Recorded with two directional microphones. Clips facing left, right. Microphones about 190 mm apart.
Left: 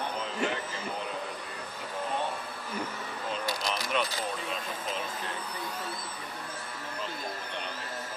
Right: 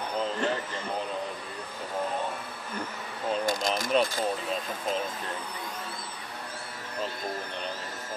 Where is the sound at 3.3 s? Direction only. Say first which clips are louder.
Right 6 dB; 45° right (ahead or behind).